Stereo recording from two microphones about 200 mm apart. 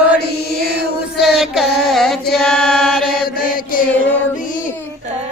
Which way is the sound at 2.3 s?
5° left (ahead or behind).